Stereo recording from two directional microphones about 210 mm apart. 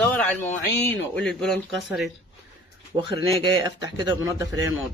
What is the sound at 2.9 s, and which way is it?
Speech, 25° right (ahead or behind).